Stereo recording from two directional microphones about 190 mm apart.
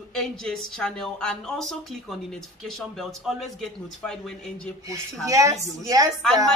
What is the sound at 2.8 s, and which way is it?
A woman's voice, centre (ahead or behind).